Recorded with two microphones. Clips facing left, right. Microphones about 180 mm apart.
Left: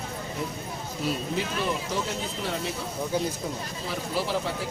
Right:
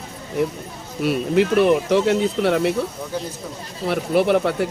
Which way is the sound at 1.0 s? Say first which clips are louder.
Right 12 dB; 65° right (ahead or behind).